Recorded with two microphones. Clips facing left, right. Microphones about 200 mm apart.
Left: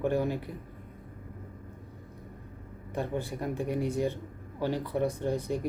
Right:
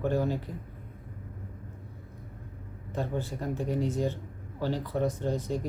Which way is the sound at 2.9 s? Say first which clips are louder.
Even; 15° left (ahead or behind).